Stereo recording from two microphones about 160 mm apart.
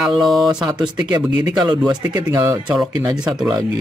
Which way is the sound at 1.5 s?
25° right (ahead or behind).